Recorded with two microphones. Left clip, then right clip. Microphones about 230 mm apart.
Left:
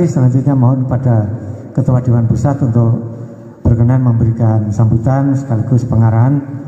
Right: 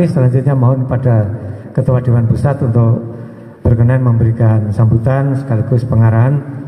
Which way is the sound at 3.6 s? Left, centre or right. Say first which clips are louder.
Even; right.